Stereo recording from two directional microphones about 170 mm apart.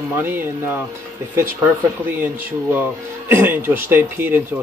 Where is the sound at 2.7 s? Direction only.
15° right (ahead or behind).